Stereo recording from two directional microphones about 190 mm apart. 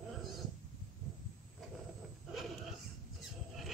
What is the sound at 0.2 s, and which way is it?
Dog, centre (ahead or behind).